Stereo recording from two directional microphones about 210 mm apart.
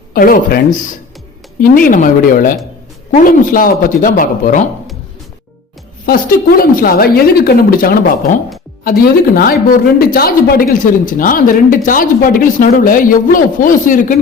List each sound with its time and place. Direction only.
0.1 s a woman's voice: 45° left (ahead or behind)
6.1 s a woman's voice: 45° left (ahead or behind)